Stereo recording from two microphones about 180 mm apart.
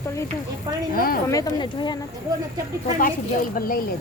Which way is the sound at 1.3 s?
20° left (ahead or behind).